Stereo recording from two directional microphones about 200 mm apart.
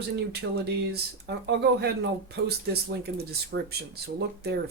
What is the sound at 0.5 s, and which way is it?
Speech, 55° right (ahead or behind).